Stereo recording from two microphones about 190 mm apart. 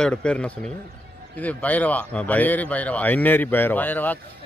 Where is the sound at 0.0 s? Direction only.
5° left (ahead or behind).